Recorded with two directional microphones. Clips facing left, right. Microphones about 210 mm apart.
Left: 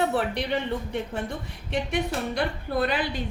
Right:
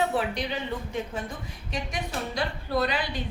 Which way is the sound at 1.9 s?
55° left (ahead or behind).